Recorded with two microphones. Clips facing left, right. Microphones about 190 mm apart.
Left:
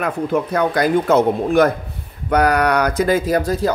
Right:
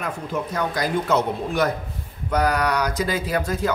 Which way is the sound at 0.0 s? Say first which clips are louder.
Left 8 dB; 60° left (ahead or behind).